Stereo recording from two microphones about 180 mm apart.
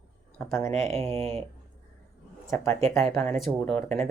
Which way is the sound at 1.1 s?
35° right (ahead or behind).